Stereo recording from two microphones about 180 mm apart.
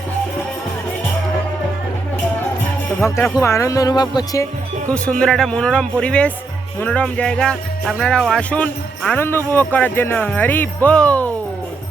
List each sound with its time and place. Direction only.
3.0 s speech: 15° left (ahead or behind)
5.2 s speech: 5° left (ahead or behind)